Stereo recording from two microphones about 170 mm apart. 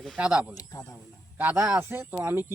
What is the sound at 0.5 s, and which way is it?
Speech, 20° left (ahead or behind).